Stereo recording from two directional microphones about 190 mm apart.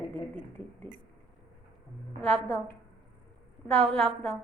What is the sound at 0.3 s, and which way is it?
Speech, 10° left (ahead or behind).